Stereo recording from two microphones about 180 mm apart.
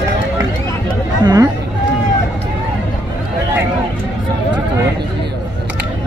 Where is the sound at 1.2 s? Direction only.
20° right (ahead or behind).